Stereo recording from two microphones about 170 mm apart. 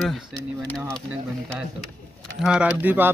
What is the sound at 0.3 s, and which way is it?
Speech, 20° right (ahead or behind).